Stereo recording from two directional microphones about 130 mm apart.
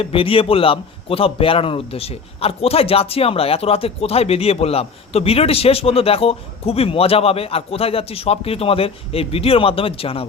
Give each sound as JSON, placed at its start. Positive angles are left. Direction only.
{"t": 0.0, "sound": "a man's voice", "side_deg": 45}